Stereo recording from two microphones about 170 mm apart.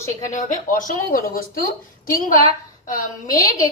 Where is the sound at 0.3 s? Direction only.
45° left (ahead or behind).